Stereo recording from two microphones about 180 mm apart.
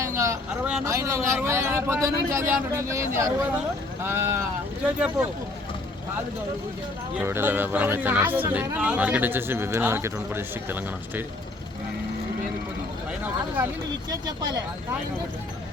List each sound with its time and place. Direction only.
0.0 s vehicle: 15° right (ahead or behind)
0.9 s speech: 15° right (ahead or behind)
7.2 s speech: 10° right (ahead or behind)
13.1 s speech: 10° right (ahead or behind)